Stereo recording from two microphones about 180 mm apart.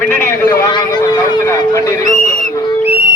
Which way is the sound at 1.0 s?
20° left (ahead or behind).